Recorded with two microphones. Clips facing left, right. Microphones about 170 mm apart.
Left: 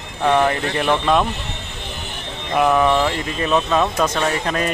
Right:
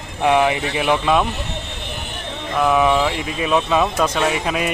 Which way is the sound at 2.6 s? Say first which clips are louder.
Even; centre (ahead or behind).